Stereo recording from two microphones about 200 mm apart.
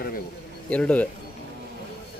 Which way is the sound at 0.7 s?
5° left (ahead or behind).